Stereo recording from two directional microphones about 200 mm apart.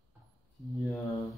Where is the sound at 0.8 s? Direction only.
Centre (ahead or behind).